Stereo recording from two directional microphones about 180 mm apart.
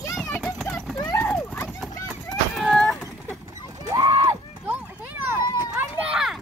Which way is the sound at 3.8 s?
20° right (ahead or behind).